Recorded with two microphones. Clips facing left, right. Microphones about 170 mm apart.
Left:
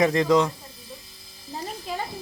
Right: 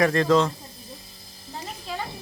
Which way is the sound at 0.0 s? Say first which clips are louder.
Even; 15° left (ahead or behind).